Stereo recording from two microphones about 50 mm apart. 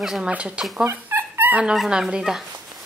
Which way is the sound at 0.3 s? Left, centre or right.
Right.